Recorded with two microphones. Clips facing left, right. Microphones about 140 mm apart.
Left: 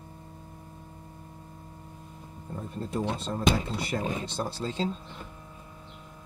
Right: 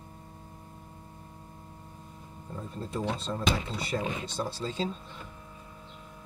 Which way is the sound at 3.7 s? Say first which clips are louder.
Left 2 dB; 50° left (ahead or behind).